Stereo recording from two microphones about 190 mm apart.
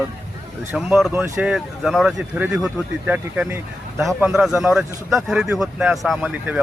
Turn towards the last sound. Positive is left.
turn(degrees=-5)  # may be behind; listen again after turning